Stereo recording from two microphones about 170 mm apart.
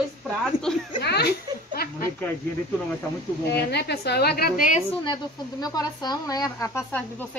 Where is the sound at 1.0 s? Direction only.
75° left (ahead or behind).